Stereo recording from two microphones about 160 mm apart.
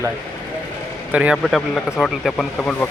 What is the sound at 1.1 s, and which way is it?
Speech, 10° right (ahead or behind).